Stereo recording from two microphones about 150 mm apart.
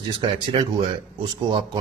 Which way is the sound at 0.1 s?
35° right (ahead or behind).